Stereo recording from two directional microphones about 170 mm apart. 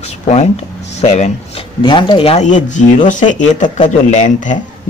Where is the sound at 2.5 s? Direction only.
45° left (ahead or behind).